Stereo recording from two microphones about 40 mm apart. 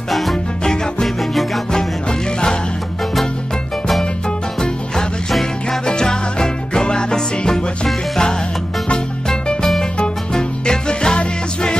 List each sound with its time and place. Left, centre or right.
0.1 s music: centre
5.3 s music: centre